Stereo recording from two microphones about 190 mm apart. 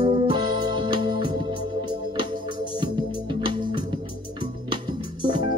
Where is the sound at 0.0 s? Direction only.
25° right (ahead or behind).